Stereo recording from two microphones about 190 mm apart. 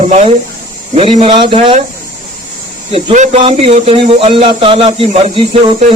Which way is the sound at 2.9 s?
30° right (ahead or behind).